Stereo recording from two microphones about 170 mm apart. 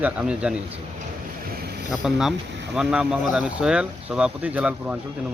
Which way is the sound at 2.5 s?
90° right.